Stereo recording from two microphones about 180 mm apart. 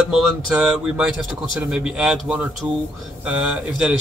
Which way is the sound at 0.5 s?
5° right (ahead or behind).